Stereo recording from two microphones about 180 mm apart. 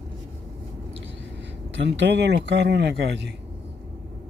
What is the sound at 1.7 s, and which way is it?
Speech, 75° right (ahead or behind).